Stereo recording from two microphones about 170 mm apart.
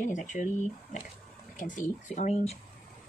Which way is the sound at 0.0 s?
50° left (ahead or behind).